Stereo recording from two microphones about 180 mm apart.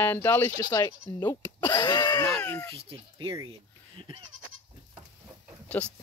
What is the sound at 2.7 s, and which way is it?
Speech, 30° right (ahead or behind).